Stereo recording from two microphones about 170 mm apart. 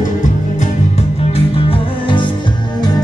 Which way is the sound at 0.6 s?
40° left (ahead or behind).